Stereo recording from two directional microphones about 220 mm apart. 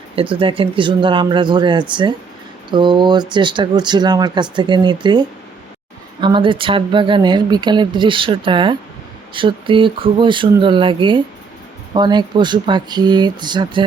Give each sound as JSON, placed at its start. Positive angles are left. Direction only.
{"t": 0.2, "sound": "speech", "side_deg": -25}